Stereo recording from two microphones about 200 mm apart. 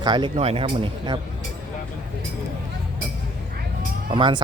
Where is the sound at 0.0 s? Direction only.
20° right (ahead or behind).